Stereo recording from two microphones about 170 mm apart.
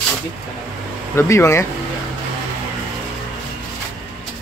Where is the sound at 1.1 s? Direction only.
15° left (ahead or behind).